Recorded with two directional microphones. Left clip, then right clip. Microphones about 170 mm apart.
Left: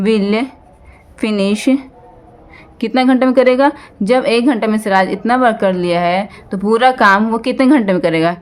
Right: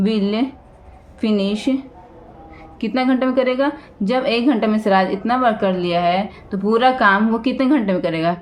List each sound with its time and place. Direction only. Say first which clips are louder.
0.0 s a woman's voice: left 5 dB; 45° left (ahead or behind)
2.8 s a woman's voice: left 6 dB; 40° left (ahead or behind)